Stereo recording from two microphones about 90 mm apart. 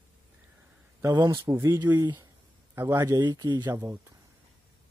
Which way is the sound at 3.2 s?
50° right (ahead or behind).